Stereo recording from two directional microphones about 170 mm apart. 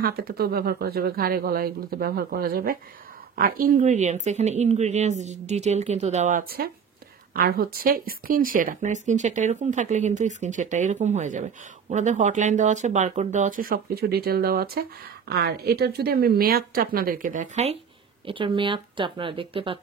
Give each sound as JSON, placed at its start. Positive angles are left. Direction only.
{"t": 0.0, "sound": "speech", "side_deg": -65}
{"t": 7.3, "sound": "speech", "side_deg": -60}
{"t": 18.2, "sound": "speech", "side_deg": -30}